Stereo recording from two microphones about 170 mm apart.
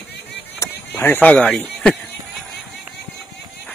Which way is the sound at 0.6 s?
10° left (ahead or behind).